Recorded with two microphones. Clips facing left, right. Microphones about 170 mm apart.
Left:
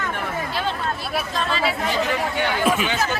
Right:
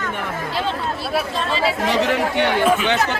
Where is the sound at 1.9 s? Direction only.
70° right (ahead or behind).